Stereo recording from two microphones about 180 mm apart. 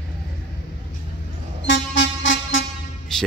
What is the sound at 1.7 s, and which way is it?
Music, 90° left.